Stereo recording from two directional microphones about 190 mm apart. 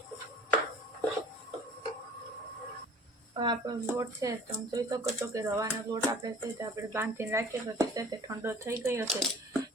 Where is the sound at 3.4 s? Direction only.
20° right (ahead or behind).